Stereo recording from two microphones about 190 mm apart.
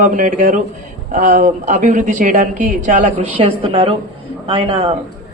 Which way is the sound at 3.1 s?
30° right (ahead or behind).